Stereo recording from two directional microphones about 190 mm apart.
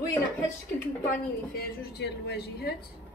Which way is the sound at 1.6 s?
60° left (ahead or behind).